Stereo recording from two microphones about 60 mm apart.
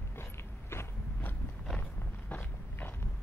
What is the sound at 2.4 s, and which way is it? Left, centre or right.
Walk, left.